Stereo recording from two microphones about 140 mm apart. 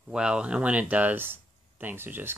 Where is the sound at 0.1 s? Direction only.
5° right (ahead or behind).